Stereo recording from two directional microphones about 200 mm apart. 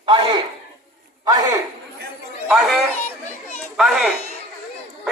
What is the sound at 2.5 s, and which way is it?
Chatter, centre (ahead or behind).